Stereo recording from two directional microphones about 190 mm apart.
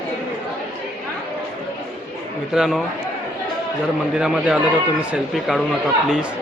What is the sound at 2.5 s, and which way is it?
Speech, 5° right (ahead or behind).